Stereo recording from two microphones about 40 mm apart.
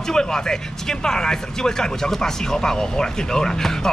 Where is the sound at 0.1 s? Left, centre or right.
Centre.